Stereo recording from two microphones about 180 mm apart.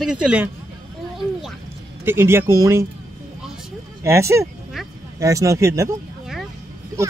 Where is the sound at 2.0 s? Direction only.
15° right (ahead or behind).